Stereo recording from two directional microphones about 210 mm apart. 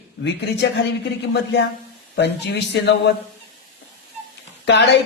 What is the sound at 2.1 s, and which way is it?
Speech, 55° left (ahead or behind).